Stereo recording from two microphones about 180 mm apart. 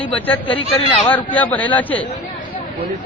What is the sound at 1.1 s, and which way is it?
Speech, 10° left (ahead or behind).